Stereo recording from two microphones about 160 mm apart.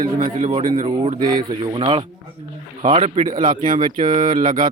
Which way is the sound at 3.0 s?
45° right (ahead or behind).